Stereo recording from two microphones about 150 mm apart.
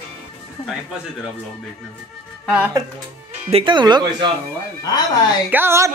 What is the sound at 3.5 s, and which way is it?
Speech, 35° right (ahead or behind).